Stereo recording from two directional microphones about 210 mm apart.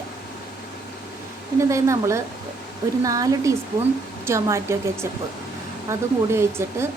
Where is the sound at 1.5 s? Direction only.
15° right (ahead or behind).